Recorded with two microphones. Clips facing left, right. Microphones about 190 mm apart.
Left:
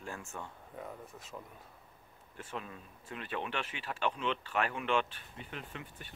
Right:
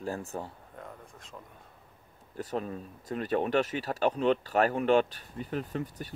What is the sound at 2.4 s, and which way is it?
Speech, 40° right (ahead or behind).